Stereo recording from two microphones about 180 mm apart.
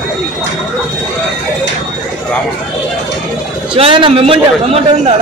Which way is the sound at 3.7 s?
30° right (ahead or behind).